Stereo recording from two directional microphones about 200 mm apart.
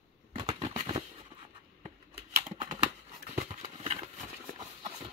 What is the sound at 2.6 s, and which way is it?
Horse, 35° right (ahead or behind).